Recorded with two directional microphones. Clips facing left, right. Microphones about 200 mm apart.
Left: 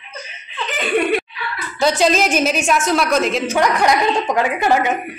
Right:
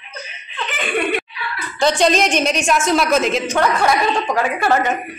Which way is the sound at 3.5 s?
15° left (ahead or behind).